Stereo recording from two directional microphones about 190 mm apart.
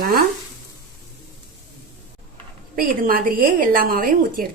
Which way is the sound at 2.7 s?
50° right (ahead or behind).